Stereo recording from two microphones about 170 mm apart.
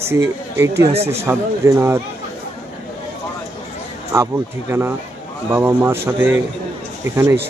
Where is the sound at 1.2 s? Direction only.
15° right (ahead or behind).